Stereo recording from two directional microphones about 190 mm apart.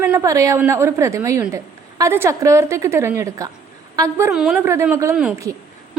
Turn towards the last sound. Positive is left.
turn(degrees=-5)  # may be behind; listen again after turning